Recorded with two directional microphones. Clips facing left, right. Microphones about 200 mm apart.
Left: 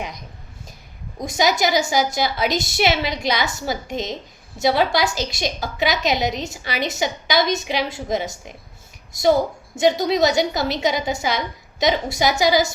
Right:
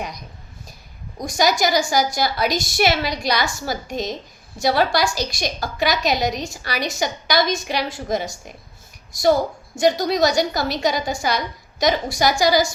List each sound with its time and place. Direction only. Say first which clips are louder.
1.2 s a woman's voice: even; 20° left (ahead or behind)
9.7 s a woman's voice: left 1 dB; 25° left (ahead or behind)